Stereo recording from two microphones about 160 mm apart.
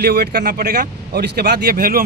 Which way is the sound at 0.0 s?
90° right.